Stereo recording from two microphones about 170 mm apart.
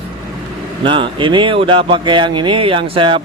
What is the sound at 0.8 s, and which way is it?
Speech, 30° right (ahead or behind).